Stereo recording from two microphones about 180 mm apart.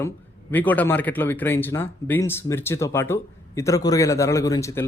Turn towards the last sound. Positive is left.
turn(degrees=15)  # may be behind; listen again after turning